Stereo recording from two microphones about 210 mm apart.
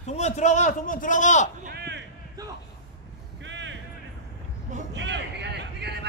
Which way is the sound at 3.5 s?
60° right (ahead or behind).